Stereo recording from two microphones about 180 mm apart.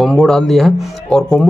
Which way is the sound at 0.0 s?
Centre (ahead or behind).